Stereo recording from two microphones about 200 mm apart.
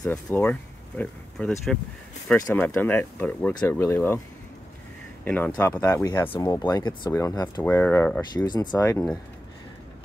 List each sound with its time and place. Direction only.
0.0 s speech: 10° left (ahead or behind)
5.2 s speech: 10° left (ahead or behind)